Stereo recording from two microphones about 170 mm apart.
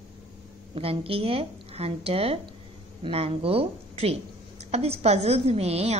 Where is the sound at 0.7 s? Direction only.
35° right (ahead or behind).